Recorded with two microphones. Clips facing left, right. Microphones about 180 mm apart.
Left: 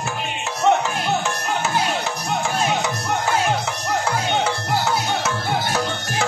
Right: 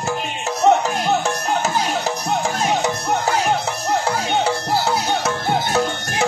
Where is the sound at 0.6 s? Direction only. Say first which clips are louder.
Right 3 dB; 40° right (ahead or behind).